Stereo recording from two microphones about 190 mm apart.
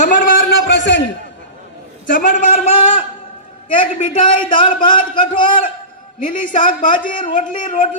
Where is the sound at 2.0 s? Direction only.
45° left (ahead or behind); by 3.1 s 30° left (ahead or behind).